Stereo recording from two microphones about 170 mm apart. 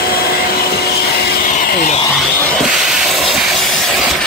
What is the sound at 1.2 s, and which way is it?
Vacuum cleaner, 70° left (ahead or behind).